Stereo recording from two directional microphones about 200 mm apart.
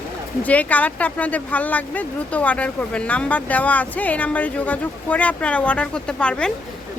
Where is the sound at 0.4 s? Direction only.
5° left (ahead or behind).